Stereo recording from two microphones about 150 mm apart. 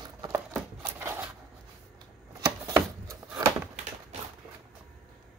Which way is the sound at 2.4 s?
20° right (ahead or behind).